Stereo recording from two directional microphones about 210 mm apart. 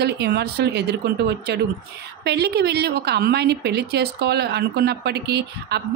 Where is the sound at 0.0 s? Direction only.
50° right (ahead or behind).